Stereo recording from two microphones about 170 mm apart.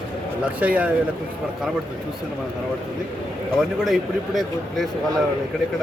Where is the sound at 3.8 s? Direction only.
Centre (ahead or behind).